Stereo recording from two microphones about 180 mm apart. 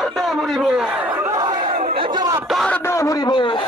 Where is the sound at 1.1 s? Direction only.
20° right (ahead or behind).